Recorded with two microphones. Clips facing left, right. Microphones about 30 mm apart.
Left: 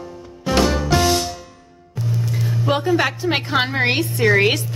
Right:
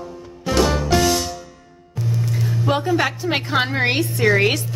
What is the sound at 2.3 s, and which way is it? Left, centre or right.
A woman's voice, centre.